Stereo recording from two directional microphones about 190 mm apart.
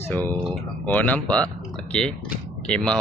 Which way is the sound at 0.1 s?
10° left (ahead or behind).